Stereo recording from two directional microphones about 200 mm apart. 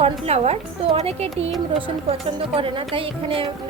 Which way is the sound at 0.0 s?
30° right (ahead or behind).